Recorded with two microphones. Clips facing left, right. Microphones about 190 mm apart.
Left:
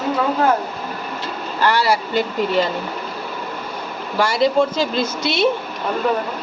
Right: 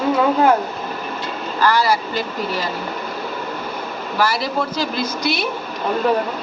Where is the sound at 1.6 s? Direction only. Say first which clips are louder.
Even; 25° left (ahead or behind).